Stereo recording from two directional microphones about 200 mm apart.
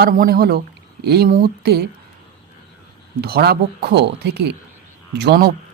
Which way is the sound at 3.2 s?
50° right (ahead or behind).